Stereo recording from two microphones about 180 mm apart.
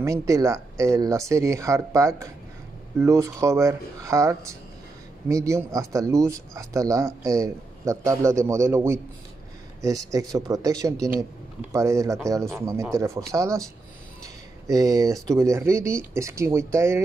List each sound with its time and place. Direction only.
0.0 s speech: 15° right (ahead or behind)